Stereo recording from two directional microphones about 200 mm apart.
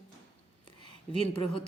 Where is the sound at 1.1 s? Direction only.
25° left (ahead or behind).